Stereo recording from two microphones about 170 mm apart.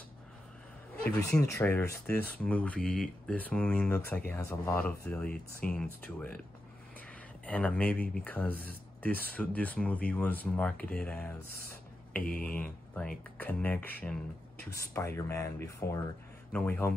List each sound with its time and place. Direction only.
1.5 s speech: 15° left (ahead or behind)
12.2 s speech: 55° left (ahead or behind)
12.5 s speech: 10° left (ahead or behind)